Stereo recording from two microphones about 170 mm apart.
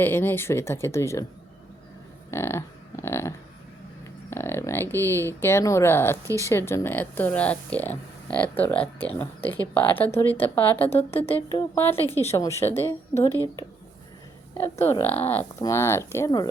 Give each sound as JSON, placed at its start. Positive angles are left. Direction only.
{"t": 0.0, "sound": "speech", "side_deg": 10}
{"t": 2.3, "sound": "a sound", "side_deg": 15}
{"t": 4.3, "sound": "speech", "side_deg": 15}
{"t": 10.8, "sound": "a woman's voice", "side_deg": 35}
{"t": 11.7, "sound": "speech", "side_deg": 10}
{"t": 15.0, "sound": "speech", "side_deg": 10}